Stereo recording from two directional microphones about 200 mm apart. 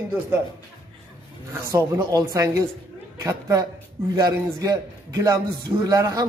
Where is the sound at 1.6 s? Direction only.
15° right (ahead or behind).